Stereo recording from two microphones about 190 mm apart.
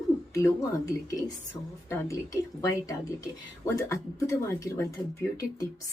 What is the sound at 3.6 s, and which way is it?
Speech, 15° left (ahead or behind).